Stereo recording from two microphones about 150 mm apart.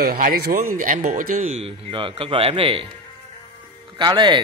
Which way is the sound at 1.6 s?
35° right (ahead or behind).